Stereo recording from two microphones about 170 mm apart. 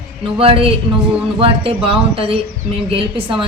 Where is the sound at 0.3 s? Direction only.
35° right (ahead or behind).